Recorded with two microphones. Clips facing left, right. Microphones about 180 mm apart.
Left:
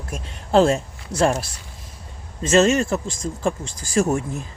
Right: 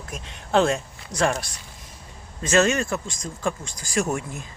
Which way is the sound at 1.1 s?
35° left (ahead or behind).